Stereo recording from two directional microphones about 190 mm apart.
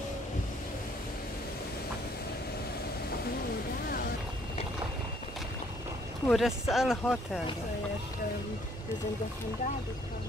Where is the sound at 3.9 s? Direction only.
50° left (ahead or behind).